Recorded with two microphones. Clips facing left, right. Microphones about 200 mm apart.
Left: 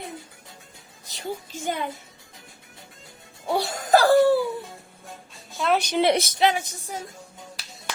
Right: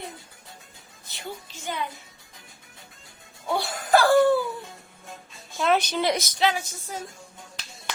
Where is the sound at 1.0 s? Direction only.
45° left (ahead or behind).